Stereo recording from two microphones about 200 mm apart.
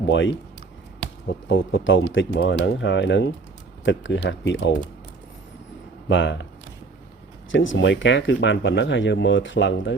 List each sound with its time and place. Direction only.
0.0 s speech: 65° left (ahead or behind)
1.5 s speech: 75° left (ahead or behind)
6.1 s speech: 60° left (ahead or behind)
7.5 s speech: 70° left (ahead or behind)